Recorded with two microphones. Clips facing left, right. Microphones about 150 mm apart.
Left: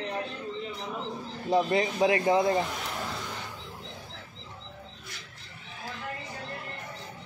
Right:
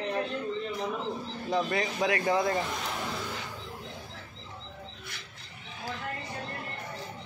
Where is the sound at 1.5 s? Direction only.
25° left (ahead or behind).